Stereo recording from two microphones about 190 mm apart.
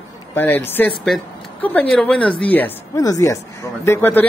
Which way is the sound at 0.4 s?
10° left (ahead or behind).